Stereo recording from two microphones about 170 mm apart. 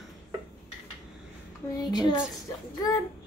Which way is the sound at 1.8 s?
25° left (ahead or behind).